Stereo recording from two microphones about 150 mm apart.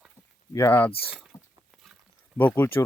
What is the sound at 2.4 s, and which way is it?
Speech, 10° left (ahead or behind).